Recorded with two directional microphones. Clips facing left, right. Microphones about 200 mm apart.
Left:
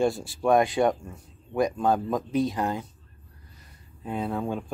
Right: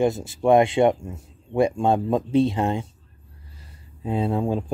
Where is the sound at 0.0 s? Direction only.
20° right (ahead or behind).